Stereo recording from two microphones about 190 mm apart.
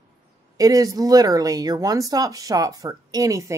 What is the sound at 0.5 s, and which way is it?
Speech, 20° right (ahead or behind).